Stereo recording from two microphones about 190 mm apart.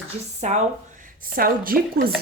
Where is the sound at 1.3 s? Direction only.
50° right (ahead or behind).